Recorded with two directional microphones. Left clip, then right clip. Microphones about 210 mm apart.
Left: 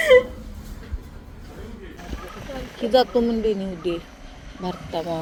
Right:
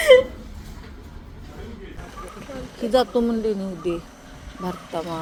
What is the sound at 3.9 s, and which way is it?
Speech, 40° right (ahead or behind).